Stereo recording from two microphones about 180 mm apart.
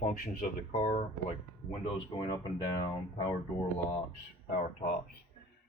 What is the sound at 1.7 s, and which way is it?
Speech, 25° left (ahead or behind).